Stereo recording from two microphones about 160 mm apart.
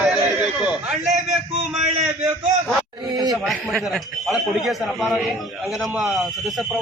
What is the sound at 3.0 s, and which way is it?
Speech, 25° right (ahead or behind).